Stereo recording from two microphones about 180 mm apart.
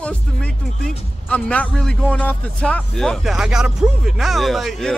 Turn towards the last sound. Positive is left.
turn(degrees=0)  # may be behind; listen again after turning